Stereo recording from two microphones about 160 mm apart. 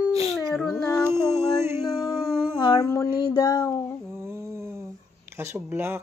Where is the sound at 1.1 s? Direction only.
15° right (ahead or behind).